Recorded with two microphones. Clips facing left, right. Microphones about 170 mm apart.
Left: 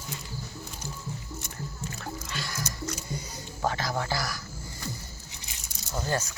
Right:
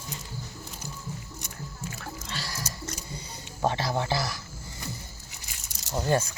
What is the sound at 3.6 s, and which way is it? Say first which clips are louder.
Speech: right 2 dB; 30° right (ahead or behind).